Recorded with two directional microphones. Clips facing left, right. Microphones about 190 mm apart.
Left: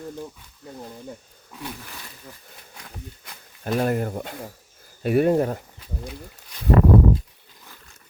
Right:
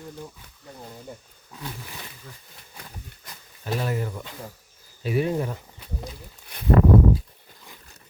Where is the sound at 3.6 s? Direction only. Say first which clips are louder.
Left 5 dB; 50° left (ahead or behind).